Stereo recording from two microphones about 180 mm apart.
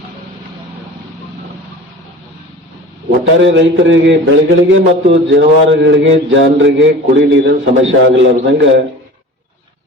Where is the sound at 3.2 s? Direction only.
85° right.